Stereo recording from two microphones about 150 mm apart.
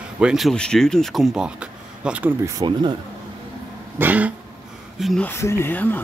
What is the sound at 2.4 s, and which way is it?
Speech, 30° right (ahead or behind).